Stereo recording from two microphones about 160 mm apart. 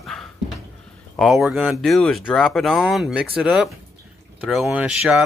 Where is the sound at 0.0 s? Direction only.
Centre (ahead or behind).